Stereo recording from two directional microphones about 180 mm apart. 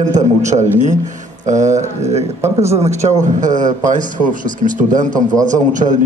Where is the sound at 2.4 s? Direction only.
15° right (ahead or behind).